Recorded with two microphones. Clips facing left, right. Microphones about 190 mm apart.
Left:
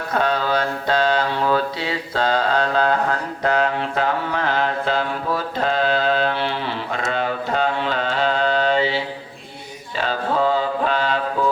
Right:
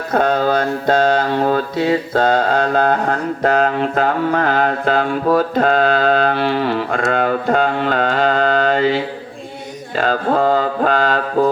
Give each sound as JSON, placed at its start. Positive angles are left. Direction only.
{"t": 0.1, "sound": "mantra", "side_deg": -45}